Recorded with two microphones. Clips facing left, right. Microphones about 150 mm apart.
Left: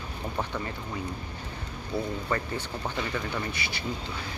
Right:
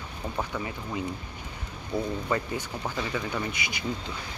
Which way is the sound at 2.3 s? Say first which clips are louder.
Right 1 dB; 10° right (ahead or behind).